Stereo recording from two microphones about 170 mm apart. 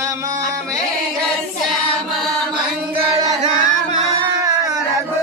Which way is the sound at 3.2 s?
40° right (ahead or behind).